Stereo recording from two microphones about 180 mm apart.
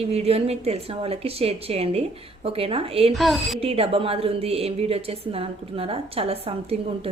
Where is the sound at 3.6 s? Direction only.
35° right (ahead or behind).